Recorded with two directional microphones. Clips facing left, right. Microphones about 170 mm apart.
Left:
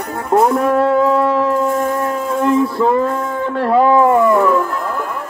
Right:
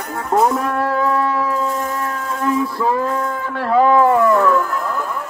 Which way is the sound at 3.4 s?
20° left (ahead or behind).